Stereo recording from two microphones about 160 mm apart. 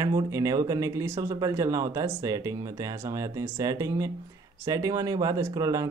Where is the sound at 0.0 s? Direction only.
20° right (ahead or behind).